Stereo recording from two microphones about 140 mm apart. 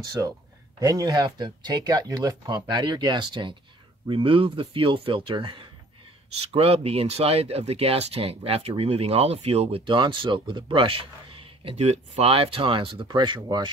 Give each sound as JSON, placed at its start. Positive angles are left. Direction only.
{"t": 0.0, "sound": "speech", "side_deg": -25}